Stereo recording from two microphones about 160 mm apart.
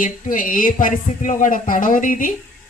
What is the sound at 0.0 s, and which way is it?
Speech, 55° left (ahead or behind).